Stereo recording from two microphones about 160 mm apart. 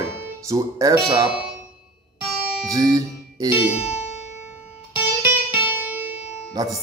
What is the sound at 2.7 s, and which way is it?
Speech, 25° right (ahead or behind).